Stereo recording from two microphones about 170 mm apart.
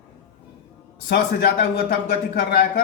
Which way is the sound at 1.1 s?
65° left (ahead or behind).